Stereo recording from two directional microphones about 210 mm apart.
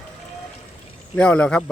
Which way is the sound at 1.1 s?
5° left (ahead or behind).